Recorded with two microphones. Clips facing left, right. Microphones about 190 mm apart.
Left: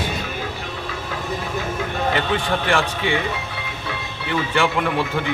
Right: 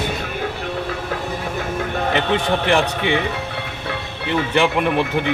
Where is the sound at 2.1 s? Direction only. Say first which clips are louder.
Right 5 dB; 20° right (ahead or behind).